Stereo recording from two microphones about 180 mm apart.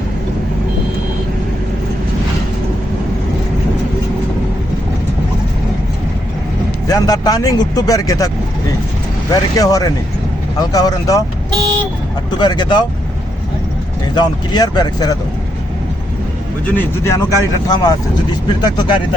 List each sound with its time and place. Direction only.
6.8 s speech: 20° left (ahead or behind)
9.3 s speech: 20° left (ahead or behind)
12.4 s speech: 25° left (ahead or behind)
14.2 s speech: 25° left (ahead or behind)
16.6 s speech: 15° left (ahead or behind)